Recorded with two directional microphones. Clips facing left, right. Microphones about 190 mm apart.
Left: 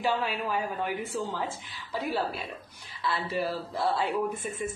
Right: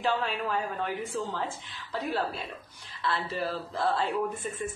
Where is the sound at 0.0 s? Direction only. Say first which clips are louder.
Even; 10° left (ahead or behind).